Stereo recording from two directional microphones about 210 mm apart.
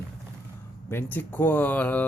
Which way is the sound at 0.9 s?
10° left (ahead or behind).